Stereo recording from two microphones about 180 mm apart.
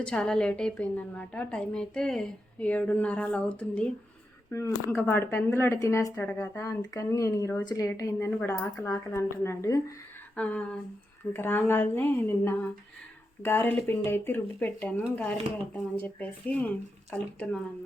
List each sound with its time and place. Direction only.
0.0 s speech: 5° left (ahead or behind)
8.3 s speech: 5° left (ahead or behind)